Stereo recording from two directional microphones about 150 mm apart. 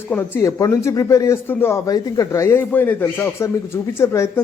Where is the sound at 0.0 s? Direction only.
15° left (ahead or behind).